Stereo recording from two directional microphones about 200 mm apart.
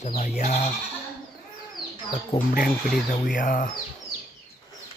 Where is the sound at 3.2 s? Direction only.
40° left (ahead or behind).